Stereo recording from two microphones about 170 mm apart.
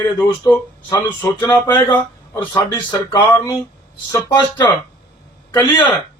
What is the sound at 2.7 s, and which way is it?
Speech, 15° left (ahead or behind).